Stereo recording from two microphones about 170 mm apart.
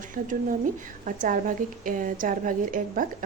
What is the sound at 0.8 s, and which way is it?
A woman's voice, 50° right (ahead or behind).